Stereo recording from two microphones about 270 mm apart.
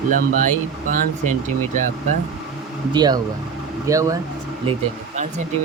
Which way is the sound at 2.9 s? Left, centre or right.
Centre.